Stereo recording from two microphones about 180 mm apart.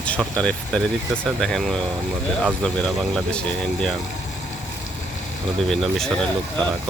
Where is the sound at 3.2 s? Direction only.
5° left (ahead or behind).